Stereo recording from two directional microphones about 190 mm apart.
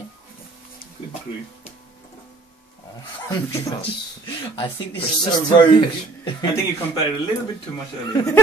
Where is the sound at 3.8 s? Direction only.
25° left (ahead or behind).